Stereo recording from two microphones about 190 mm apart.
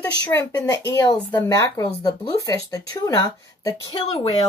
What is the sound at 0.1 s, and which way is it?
Speech, 15° left (ahead or behind).